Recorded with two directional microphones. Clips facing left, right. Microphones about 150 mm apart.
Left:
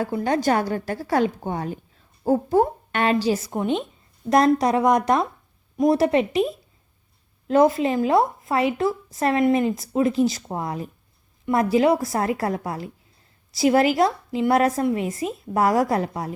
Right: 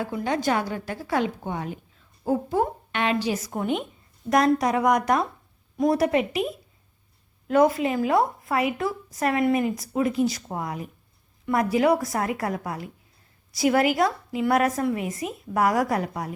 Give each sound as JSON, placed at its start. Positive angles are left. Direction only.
{"t": 0.0, "sound": "a woman's voice", "side_deg": 40}